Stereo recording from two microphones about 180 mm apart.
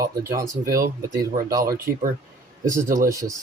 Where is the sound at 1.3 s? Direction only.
20° right (ahead or behind).